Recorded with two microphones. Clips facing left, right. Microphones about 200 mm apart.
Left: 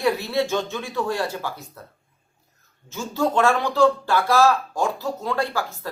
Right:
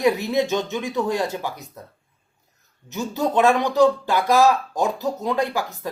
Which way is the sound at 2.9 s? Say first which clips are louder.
Even; 20° right (ahead or behind).